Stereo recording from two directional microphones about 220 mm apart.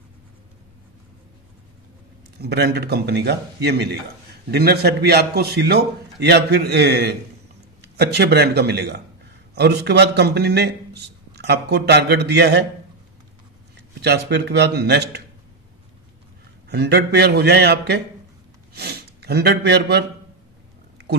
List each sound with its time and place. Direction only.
2.4 s a man's voice: 45° right (ahead or behind)
14.0 s a man's voice: 50° right (ahead or behind)
16.6 s a man's voice: 50° right (ahead or behind)